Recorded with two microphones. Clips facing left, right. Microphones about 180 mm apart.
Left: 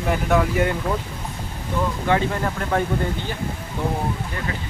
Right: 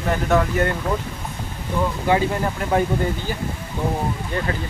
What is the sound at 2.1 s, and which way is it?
Speech, 10° right (ahead or behind).